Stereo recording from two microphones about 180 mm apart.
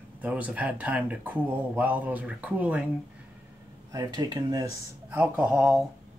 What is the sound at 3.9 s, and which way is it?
Speech, 20° right (ahead or behind).